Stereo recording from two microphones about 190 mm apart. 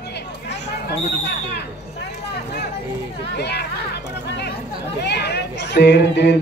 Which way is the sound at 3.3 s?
60° left (ahead or behind).